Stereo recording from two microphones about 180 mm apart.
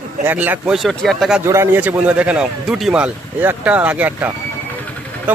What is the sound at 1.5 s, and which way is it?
A man's voice, 10° right (ahead or behind).